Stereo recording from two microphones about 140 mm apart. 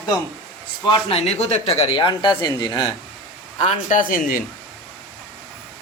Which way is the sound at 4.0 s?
80° left.